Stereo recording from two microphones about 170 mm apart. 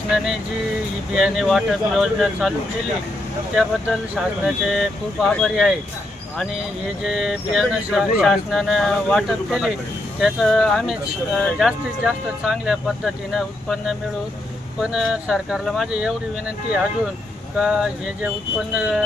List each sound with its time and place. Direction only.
1.1 s speech: centre (ahead or behind)
3.5 s speech: 5° right (ahead or behind)
7.0 s speech: centre (ahead or behind)
17.6 s speech: 5° right (ahead or behind)